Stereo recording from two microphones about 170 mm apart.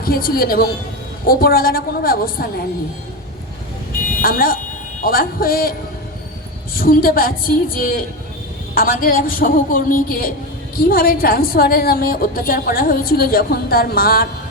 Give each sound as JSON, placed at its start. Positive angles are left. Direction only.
{"t": 0.0, "sound": "a woman's voice", "side_deg": 60}
{"t": 3.9, "sound": "a sound", "side_deg": 55}
{"t": 6.7, "sound": "a woman's voice", "side_deg": 60}